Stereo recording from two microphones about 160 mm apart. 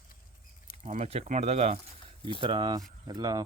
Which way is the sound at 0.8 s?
45° right (ahead or behind).